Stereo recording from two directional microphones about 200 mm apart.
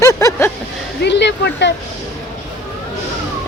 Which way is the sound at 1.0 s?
60° left (ahead or behind).